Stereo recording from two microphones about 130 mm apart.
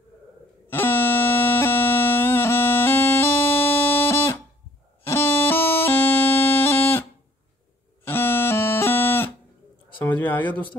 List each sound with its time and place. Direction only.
0.7 s music: 15° left (ahead or behind)
5.0 s bagpipes: 15° left (ahead or behind)
8.0 s music: 15° left (ahead or behind)
10.0 s a sound: 15° left (ahead or behind)